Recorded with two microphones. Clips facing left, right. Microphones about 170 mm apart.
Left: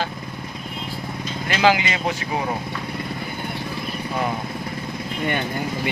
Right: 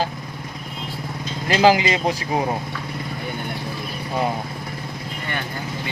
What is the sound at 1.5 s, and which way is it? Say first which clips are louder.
Speech: right 3 dB; 35° right (ahead or behind).